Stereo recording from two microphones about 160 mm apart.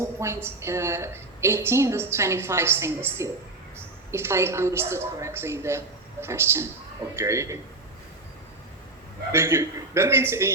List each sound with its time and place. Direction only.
0.0 s a woman's voice: 15° right (ahead or behind)
9.3 s a woman's voice: 15° right (ahead or behind)